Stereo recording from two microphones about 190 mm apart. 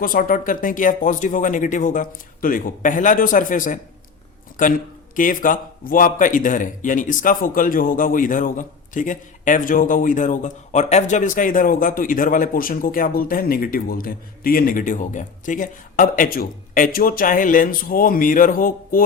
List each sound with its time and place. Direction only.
0.0 s a man's voice: 50° left (ahead or behind)